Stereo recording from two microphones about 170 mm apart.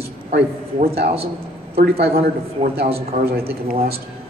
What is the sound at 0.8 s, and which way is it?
Speech, 65° right (ahead or behind).